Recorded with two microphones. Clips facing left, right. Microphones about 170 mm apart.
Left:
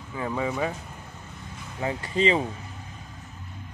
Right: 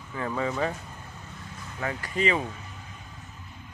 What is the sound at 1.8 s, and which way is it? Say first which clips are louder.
Speech: left 3 dB; 25° left (ahead or behind).